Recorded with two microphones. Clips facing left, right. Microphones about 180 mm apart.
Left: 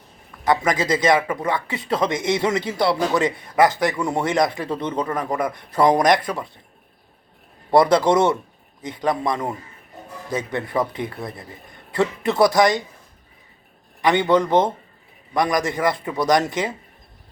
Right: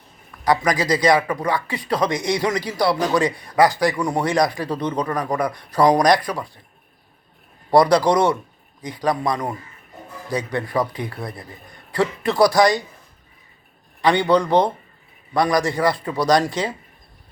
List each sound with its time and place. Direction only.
0.4 s speech: 25° left (ahead or behind)
7.7 s speech: 25° left (ahead or behind)
14.0 s speech: 20° left (ahead or behind)